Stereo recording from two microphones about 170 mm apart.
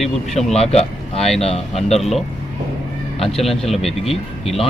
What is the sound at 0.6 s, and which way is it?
Speech, 40° left (ahead or behind).